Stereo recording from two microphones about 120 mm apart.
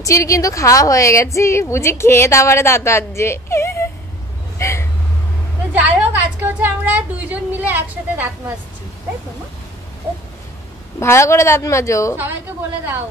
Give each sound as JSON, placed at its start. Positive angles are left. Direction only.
{"t": 0.0, "sound": "a woman's voice", "side_deg": 25}
{"t": 5.7, "sound": "a woman's voice", "side_deg": -15}
{"t": 11.0, "sound": "a woman's voice", "side_deg": 25}
{"t": 12.2, "sound": "a woman's voice", "side_deg": -15}